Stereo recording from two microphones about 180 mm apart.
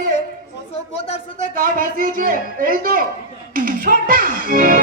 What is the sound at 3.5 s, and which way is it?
Music, 50° right (ahead or behind).